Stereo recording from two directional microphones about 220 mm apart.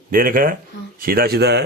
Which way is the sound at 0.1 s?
40° right (ahead or behind).